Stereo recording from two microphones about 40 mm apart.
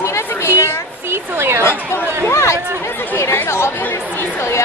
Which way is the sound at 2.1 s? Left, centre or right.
Right.